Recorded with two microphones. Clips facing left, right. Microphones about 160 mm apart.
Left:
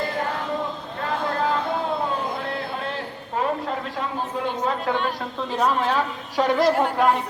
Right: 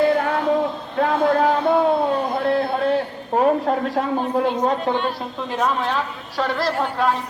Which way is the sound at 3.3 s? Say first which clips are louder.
Right 7 dB; 50° right (ahead or behind).